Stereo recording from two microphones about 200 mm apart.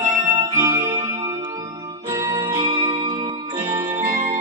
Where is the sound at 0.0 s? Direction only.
40° right (ahead or behind).